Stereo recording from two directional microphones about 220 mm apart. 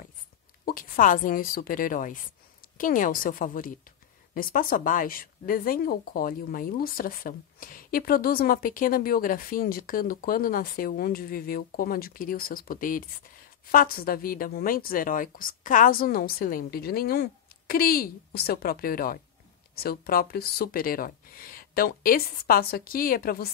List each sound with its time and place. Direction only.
0.7 s speech: 40° left (ahead or behind)